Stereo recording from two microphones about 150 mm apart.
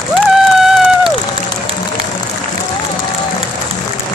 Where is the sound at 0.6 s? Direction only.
5° right (ahead or behind).